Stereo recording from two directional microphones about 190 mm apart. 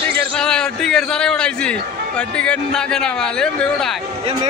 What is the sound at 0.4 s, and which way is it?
A man's voice, 5° left (ahead or behind).